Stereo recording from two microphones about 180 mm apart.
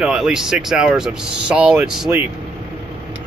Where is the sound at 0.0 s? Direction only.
5° right (ahead or behind).